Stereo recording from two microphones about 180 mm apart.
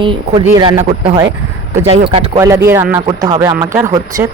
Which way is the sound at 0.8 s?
40° right (ahead or behind).